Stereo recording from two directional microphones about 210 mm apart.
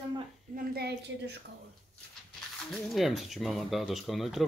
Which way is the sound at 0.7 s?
50° right (ahead or behind).